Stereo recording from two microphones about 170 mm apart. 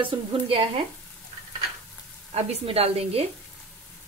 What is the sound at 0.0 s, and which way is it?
Speech, 35° right (ahead or behind).